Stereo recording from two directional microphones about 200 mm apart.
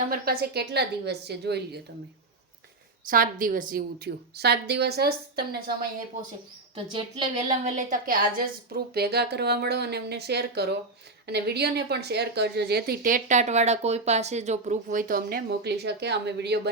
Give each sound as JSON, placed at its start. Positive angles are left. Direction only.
{"t": 0.1, "sound": "a woman's voice", "side_deg": -50}
{"t": 3.1, "sound": "a woman's voice", "side_deg": -45}
{"t": 6.7, "sound": "a woman's voice", "side_deg": -25}
{"t": 7.4, "sound": "a woman's voice", "side_deg": -35}